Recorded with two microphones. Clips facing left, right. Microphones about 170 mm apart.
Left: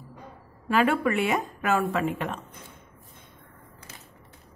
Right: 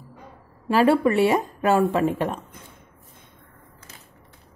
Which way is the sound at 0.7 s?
30° right (ahead or behind).